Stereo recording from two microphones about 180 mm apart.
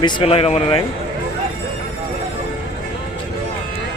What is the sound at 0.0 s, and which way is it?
Speech, 25° left (ahead or behind).